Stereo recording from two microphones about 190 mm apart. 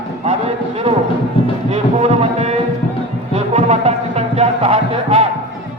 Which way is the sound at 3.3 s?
35° right (ahead or behind).